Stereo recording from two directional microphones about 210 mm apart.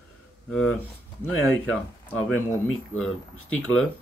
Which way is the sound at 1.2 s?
10° left (ahead or behind).